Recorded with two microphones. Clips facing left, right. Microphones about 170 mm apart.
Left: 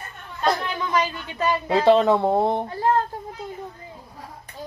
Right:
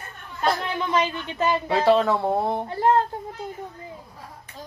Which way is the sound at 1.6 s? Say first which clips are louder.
Left 4 dB; 20° left (ahead or behind).